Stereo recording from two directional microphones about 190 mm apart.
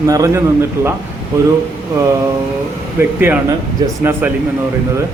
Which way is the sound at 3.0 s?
10° right (ahead or behind).